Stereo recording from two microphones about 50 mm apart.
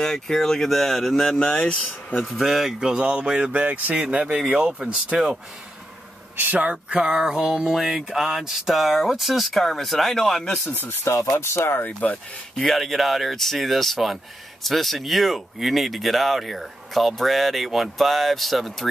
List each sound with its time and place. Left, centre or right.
0.0 s speech: centre
2.1 s speech: centre
2.8 s speech: centre
3.5 s speech: right
6.3 s speech: right
6.7 s speech: centre
10.7 s speech: left
11.1 s speech: left
11.8 s speech: left
12.5 s speech: centre